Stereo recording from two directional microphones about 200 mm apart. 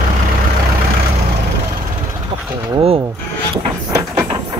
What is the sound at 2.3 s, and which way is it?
Bird, 35° right (ahead or behind).